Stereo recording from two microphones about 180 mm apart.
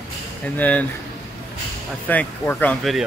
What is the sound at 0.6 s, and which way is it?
Speech, 10° left (ahead or behind).